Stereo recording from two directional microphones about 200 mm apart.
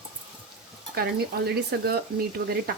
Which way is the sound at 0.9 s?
50° right (ahead or behind).